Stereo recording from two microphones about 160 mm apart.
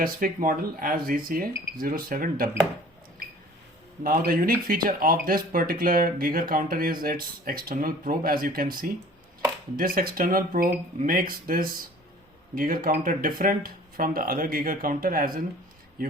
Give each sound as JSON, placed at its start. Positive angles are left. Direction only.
{"t": 0.0, "sound": "speech", "side_deg": -60}
{"t": 4.0, "sound": "speech", "side_deg": -65}